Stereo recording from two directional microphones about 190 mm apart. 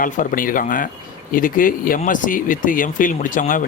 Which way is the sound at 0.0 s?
45° left (ahead or behind).